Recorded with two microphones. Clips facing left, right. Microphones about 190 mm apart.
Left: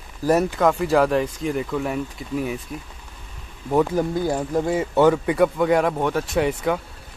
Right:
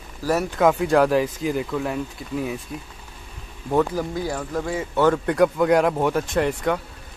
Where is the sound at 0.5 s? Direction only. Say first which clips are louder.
Right 1 dB; centre (ahead or behind).